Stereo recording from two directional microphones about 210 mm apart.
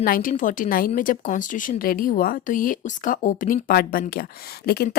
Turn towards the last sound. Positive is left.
turn(degrees=45)  # may be behind; listen again after turning